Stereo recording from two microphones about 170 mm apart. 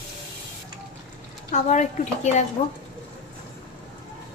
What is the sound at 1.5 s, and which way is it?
Speech, 45° left (ahead or behind).